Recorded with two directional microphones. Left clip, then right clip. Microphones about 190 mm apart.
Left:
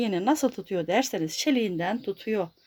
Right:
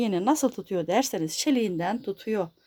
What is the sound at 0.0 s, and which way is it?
Speech, 5° right (ahead or behind).